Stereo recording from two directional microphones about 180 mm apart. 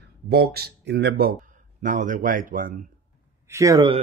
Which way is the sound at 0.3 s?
60° right (ahead or behind).